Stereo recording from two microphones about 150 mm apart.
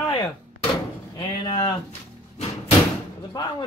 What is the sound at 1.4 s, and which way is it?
Speech, 30° left (ahead or behind).